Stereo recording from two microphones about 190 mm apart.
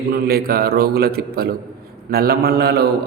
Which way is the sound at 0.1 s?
55° right (ahead or behind).